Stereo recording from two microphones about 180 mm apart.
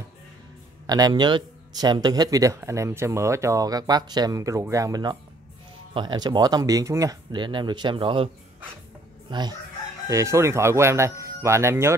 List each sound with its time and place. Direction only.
0.8 s speech: 20° right (ahead or behind)
9.3 s speech: 25° right (ahead or behind)